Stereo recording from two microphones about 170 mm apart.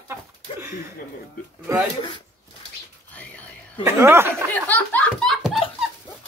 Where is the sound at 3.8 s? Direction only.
15° right (ahead or behind).